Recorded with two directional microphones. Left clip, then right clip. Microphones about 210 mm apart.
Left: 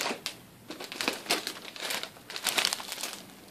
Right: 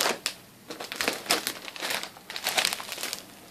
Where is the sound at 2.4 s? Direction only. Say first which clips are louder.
Right 2 dB; 10° left (ahead or behind).